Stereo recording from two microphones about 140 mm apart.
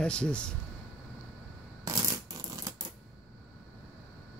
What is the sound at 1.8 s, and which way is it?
Shuffling cards, 25° right (ahead or behind).